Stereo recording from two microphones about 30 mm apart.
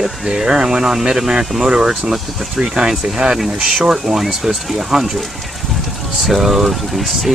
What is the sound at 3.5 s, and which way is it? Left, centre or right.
Speech, right.